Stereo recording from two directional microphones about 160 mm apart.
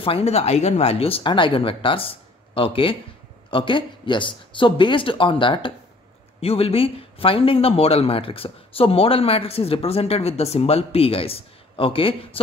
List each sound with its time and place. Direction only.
0.0 s a man's voice: 40° left (ahead or behind)